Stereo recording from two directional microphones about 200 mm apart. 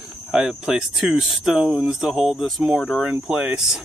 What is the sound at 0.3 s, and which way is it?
Speech, 5° right (ahead or behind).